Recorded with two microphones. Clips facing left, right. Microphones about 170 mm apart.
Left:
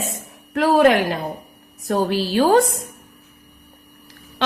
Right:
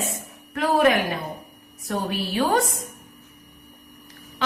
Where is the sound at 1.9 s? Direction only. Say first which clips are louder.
Left 7 dB; 85° left.